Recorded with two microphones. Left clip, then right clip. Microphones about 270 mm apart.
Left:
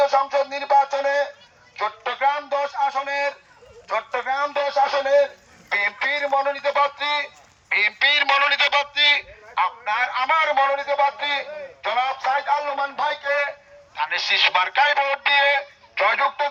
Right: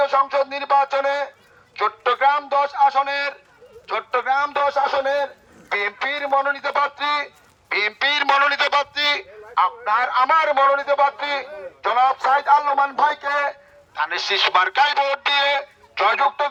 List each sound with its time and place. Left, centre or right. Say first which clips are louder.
0.0 s a man's voice: right 1 dB; centre